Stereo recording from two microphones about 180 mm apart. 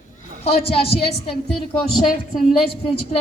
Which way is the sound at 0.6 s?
30° left (ahead or behind).